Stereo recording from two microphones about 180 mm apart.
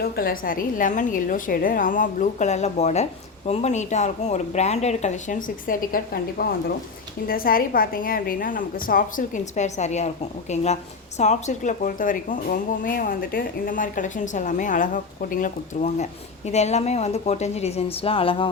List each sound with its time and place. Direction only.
0.0 s a woman's voice: 55° left (ahead or behind); by 18.4 s 30° left (ahead or behind)